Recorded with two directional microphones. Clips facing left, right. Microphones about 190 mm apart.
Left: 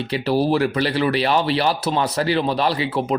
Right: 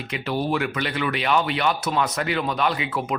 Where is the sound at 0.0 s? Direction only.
35° left (ahead or behind).